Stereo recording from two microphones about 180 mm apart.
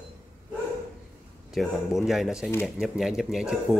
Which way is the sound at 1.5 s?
Centre (ahead or behind).